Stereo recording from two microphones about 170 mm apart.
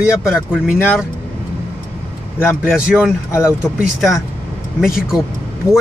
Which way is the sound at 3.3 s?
15° left (ahead or behind).